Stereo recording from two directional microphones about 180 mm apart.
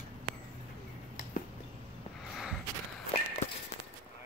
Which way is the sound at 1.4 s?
50° left (ahead or behind).